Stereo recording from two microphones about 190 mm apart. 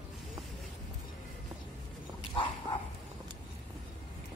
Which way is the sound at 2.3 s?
25° left (ahead or behind).